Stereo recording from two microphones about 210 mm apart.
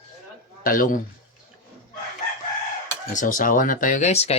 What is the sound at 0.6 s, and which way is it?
Speech, 40° left (ahead or behind).